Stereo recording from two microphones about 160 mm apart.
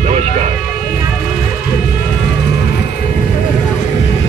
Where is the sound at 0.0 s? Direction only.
40° right (ahead or behind).